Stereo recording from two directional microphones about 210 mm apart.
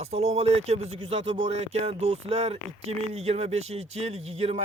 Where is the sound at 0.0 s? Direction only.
30° right (ahead or behind).